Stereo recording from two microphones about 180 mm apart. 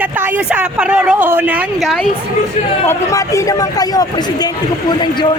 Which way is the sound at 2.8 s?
15° left (ahead or behind).